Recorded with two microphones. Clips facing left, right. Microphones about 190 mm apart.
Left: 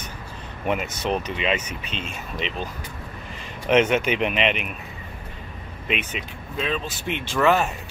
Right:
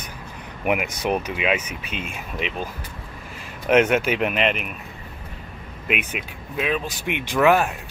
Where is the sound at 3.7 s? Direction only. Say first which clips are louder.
Right 1 dB; 10° right (ahead or behind).